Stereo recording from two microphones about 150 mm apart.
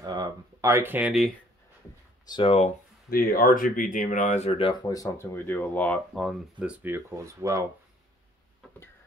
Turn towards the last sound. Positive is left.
turn(degrees=-20)  # may be behind; listen again after turning